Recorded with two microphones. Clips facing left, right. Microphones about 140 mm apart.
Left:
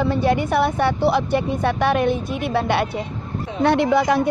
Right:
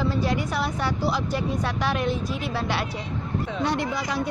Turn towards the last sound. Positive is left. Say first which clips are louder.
# left 10 dB
turn(degrees=60)  # may be behind; listen again after turning